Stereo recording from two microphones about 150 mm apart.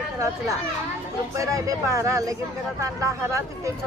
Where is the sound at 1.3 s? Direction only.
20° right (ahead or behind).